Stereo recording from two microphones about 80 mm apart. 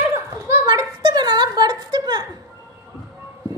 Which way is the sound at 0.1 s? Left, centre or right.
Right.